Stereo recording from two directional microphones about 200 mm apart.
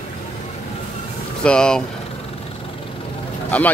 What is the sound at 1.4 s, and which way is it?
Speech, 5° left (ahead or behind).